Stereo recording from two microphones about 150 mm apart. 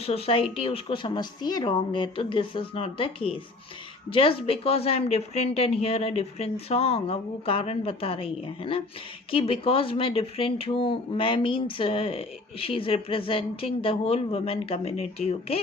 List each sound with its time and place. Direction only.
0.0 s speech: 40° left (ahead or behind)